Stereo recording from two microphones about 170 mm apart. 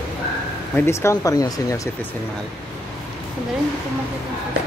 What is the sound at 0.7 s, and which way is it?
Speech, 15° left (ahead or behind).